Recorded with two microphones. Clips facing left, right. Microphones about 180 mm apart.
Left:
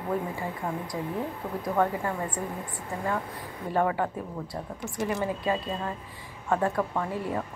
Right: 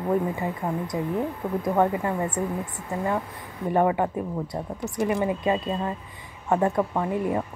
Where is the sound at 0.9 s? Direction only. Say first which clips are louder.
Right 5 dB; 15° right (ahead or behind).